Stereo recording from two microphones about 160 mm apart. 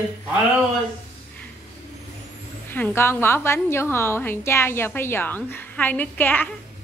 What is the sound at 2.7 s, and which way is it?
A woman's voice, 15° left (ahead or behind).